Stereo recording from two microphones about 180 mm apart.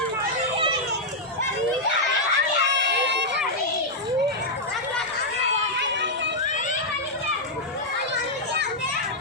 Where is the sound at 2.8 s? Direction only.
75° right (ahead or behind).